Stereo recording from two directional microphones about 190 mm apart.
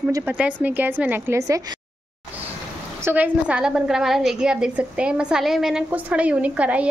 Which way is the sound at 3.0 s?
10° right (ahead or behind).